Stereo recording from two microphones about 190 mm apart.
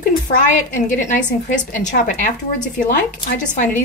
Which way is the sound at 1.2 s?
45° left (ahead or behind).